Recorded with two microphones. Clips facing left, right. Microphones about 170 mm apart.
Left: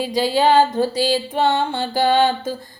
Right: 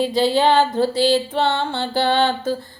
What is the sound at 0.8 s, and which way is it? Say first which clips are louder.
Music: right 2 dB; 15° left (ahead or behind).